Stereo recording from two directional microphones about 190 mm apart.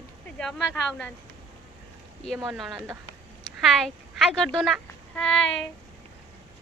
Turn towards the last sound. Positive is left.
turn(degrees=5)  # may be behind; listen again after turning